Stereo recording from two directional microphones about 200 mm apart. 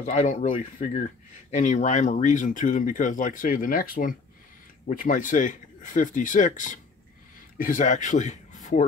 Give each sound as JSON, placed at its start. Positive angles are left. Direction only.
{"t": 0.0, "sound": "speech", "side_deg": 35}